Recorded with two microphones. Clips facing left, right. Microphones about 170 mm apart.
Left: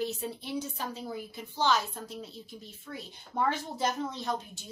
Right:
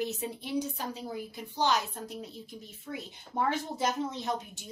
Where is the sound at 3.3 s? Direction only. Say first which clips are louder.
Even; 20° right (ahead or behind).